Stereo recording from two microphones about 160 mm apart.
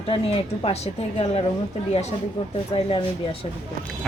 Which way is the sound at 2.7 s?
35° left (ahead or behind).